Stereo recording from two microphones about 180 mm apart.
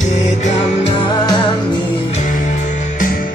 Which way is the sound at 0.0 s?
40° left (ahead or behind).